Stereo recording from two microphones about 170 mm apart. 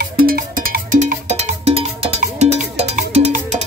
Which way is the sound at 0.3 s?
60° right (ahead or behind).